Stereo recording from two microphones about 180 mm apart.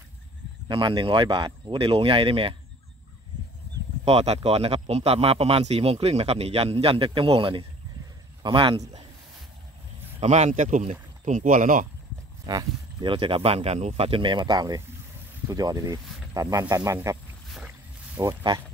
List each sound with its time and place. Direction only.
0.7 s speech: 25° right (ahead or behind)
4.0 s speech: 35° right (ahead or behind)
10.2 s speech: 40° right (ahead or behind)
12.4 s speech: 25° right (ahead or behind)
17.5 s boat: 5° right (ahead or behind)
18.2 s speech: 25° right (ahead or behind)